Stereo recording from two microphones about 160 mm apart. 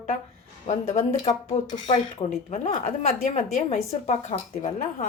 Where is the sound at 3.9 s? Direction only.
40° left (ahead or behind).